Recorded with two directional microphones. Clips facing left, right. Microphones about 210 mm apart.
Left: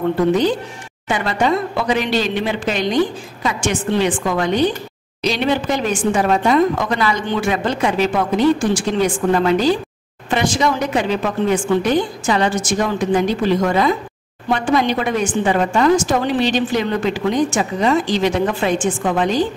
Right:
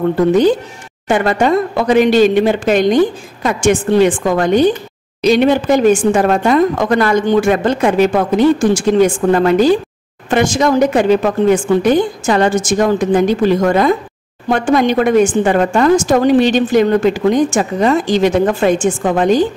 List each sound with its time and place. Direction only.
1.0 s a woman's voice: 50° right (ahead or behind)